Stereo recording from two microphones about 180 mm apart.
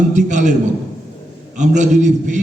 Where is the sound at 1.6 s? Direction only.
45° right (ahead or behind).